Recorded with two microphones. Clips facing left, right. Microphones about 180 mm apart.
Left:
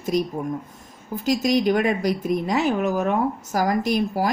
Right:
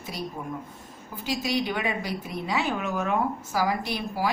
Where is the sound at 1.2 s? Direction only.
45° left (ahead or behind).